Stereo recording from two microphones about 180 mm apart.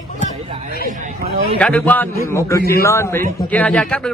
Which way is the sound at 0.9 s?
45° right (ahead or behind).